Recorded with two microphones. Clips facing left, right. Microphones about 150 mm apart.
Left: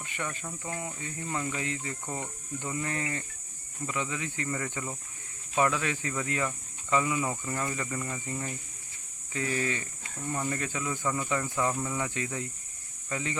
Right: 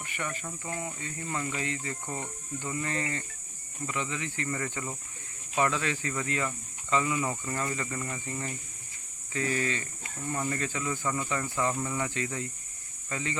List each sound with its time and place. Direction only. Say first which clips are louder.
0.0 s a sound: even; 15° left (ahead or behind)
0.6 s speech: even; 15° left (ahead or behind)
10.2 s speech: even; 5° left (ahead or behind)